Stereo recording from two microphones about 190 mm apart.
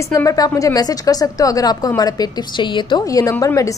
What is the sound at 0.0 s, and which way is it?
A woman's voice, 15° left (ahead or behind).